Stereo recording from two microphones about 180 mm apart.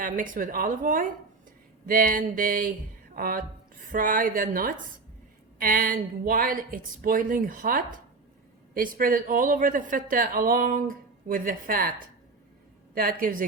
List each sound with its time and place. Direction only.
0.0 s speech: 50° right (ahead or behind)